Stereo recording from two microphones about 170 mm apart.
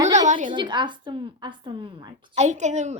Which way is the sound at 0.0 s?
20° right (ahead or behind).